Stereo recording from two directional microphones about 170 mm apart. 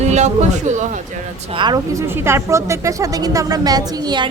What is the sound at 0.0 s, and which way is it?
Speech, 40° right (ahead or behind).